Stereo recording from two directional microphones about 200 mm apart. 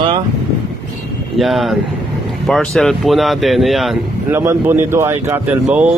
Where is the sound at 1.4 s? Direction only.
Centre (ahead or behind).